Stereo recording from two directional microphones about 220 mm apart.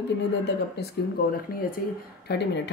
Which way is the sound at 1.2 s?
45° left (ahead or behind).